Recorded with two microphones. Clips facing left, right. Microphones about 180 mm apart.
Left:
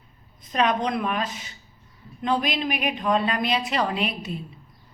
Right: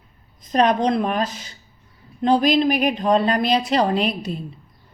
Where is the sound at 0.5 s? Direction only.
40° right (ahead or behind).